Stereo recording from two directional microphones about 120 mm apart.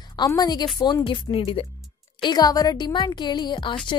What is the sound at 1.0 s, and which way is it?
Speech, 45° left (ahead or behind).